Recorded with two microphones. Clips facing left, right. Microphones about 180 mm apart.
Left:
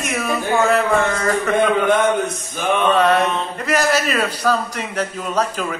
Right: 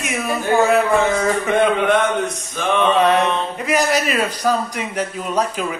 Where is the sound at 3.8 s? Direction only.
15° right (ahead or behind).